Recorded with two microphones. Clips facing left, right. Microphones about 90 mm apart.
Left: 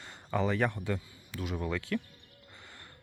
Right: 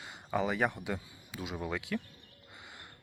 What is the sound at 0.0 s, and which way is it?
Speech, 10° right (ahead or behind).